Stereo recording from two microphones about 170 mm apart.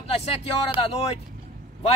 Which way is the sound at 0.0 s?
35° left (ahead or behind).